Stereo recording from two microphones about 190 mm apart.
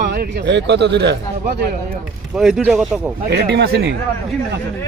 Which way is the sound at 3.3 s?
60° right (ahead or behind).